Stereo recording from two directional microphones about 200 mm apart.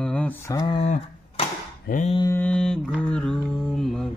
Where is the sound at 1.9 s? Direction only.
35° left (ahead or behind).